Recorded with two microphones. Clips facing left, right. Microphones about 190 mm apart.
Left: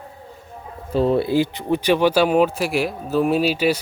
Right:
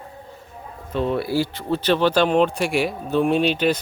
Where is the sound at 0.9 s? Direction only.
35° left (ahead or behind).